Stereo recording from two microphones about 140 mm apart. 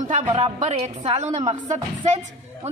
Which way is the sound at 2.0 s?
50° right (ahead or behind).